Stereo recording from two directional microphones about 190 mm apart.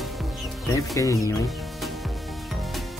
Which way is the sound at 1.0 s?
15° left (ahead or behind).